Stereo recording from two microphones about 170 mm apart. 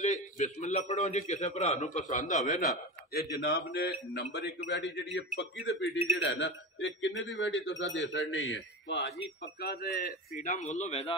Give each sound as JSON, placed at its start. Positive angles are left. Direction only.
{"t": 0.0, "sound": "a man's voice", "side_deg": 45}
{"t": 3.1, "sound": "a man's voice", "side_deg": 70}
{"t": 9.6, "sound": "a man's voice", "side_deg": 60}